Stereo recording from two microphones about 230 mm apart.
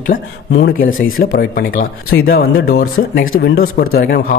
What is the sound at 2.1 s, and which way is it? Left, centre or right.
A man's voice, left.